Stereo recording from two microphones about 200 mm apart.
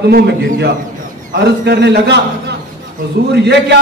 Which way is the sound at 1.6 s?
55° right (ahead or behind).